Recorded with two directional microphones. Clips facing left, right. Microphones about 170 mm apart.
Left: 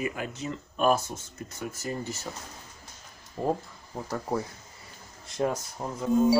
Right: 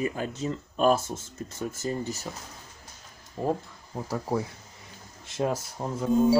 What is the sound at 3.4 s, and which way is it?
Speech, 5° right (ahead or behind).